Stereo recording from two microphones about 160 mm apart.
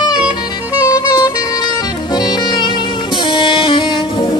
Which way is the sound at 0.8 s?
25° left (ahead or behind).